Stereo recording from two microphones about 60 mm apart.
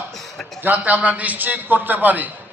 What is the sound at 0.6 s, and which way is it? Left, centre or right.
A man's voice, right.